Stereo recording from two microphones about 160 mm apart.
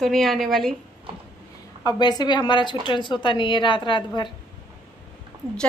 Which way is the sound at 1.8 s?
25° left (ahead or behind).